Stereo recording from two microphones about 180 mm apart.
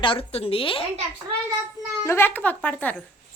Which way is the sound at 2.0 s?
15° left (ahead or behind).